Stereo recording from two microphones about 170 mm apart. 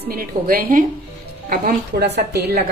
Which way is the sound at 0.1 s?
60° right (ahead or behind).